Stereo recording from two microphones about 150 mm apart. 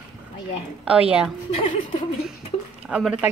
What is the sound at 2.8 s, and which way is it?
Speech, 5° right (ahead or behind).